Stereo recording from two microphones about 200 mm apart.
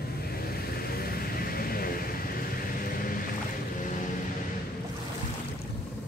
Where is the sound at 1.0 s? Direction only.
50° left (ahead or behind).